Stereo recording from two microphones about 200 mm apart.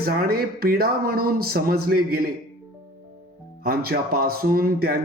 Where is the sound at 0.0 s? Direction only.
50° right (ahead or behind).